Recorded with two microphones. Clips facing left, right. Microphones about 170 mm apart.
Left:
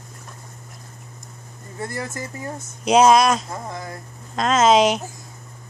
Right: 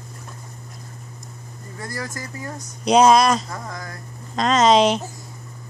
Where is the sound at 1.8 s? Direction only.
25° left (ahead or behind).